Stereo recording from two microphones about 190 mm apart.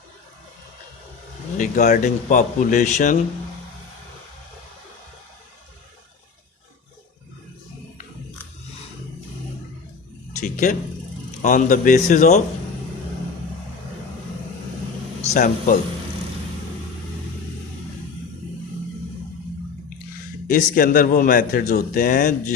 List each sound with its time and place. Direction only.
1.5 s a man's voice: 40° left (ahead or behind)
10.4 s a sound: 40° left (ahead or behind)
11.4 s a man's voice: 45° left (ahead or behind)
15.2 s speech: 45° left (ahead or behind)
20.5 s a man's voice: 45° left (ahead or behind)